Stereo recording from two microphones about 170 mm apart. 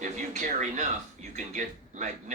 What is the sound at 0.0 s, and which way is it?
Speech, 45° right (ahead or behind).